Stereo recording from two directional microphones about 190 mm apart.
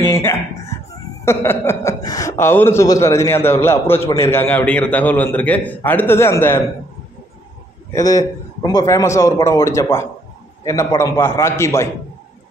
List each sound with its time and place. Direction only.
0.0 s a sound: 15° left (ahead or behind)
1.2 s speech: 15° left (ahead or behind)
7.9 s speech: 20° left (ahead or behind)